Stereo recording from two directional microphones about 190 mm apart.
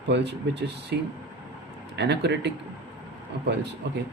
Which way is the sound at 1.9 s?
60° right (ahead or behind).